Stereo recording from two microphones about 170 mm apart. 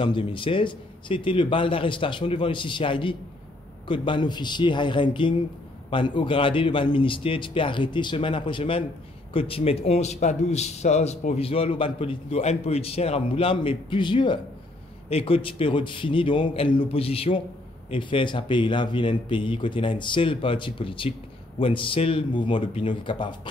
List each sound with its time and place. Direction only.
0.0 s speech: 30° left (ahead or behind)